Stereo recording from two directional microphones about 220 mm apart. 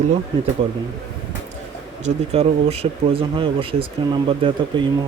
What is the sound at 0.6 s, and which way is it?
Speech, 25° right (ahead or behind).